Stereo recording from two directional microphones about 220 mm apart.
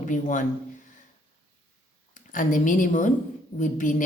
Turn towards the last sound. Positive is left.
turn(degrees=35)  # may be behind; listen again after turning